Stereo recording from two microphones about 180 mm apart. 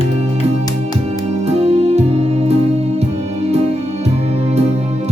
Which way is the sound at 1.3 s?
35° right (ahead or behind).